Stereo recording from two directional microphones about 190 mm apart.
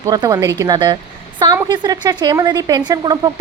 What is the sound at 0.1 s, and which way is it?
A woman's voice, 20° right (ahead or behind).